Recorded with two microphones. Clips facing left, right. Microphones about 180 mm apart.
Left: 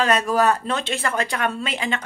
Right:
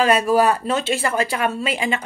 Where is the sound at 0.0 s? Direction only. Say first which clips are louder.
Right 3 dB; 10° right (ahead or behind).